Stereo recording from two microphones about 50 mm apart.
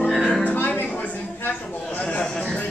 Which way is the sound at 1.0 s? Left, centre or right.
Left.